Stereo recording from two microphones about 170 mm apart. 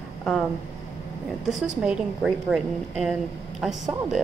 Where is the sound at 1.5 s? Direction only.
5° right (ahead or behind).